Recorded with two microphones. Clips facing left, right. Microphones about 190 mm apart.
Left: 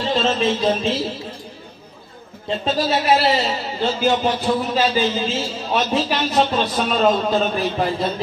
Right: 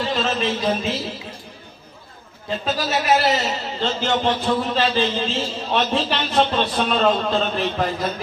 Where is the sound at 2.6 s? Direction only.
25° left (ahead or behind).